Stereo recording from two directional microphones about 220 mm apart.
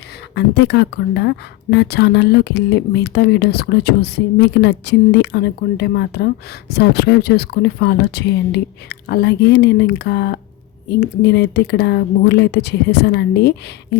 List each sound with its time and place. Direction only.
0.3 s a woman's voice: 50° left (ahead or behind)